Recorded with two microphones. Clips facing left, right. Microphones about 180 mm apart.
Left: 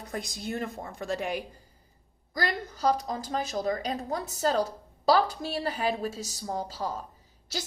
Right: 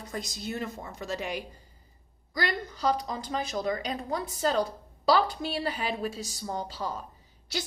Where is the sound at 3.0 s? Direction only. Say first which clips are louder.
Left 1 dB; 45° left (ahead or behind).